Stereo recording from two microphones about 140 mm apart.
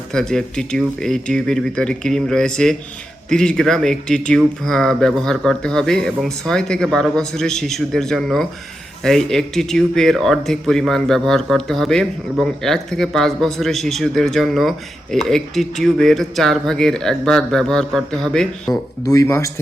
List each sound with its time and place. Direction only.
0.1 s speech: 5° left (ahead or behind)
19.0 s speech: 25° left (ahead or behind)